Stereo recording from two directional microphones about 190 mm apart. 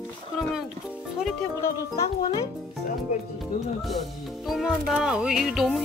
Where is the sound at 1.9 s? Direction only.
15° left (ahead or behind).